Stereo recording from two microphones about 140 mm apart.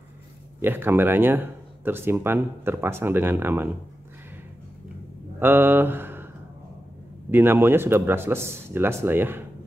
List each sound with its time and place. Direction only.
0.6 s speech: 15° right (ahead or behind)
5.4 s a sound: 15° right (ahead or behind)
7.2 s speech: 15° right (ahead or behind)